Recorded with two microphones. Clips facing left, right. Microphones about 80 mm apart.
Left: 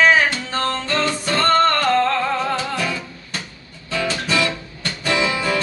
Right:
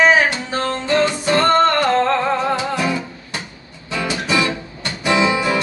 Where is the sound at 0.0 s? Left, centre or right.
Centre.